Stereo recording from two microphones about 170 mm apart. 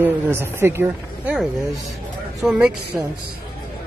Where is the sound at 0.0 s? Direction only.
15° right (ahead or behind).